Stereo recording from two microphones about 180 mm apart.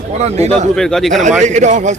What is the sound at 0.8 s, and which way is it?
Speech, centre (ahead or behind).